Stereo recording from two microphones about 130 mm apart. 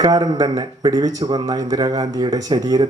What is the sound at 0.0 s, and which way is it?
Speech, 30° right (ahead or behind).